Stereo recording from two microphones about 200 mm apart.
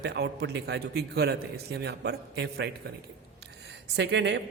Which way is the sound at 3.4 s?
60° right (ahead or behind).